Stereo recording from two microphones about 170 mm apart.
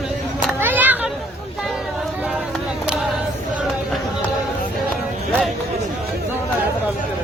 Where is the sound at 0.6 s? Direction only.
10° right (ahead or behind).